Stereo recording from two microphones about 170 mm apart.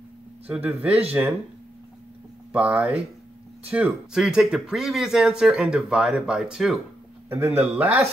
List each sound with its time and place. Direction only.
0.5 s a man's voice: 10° right (ahead or behind)
2.5 s a man's voice: 5° right (ahead or behind)